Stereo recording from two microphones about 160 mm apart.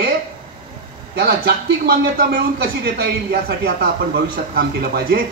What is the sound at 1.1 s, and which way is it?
Speech, 80° right.